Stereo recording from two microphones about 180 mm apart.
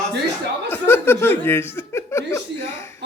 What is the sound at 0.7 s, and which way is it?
Speech, 10° left (ahead or behind).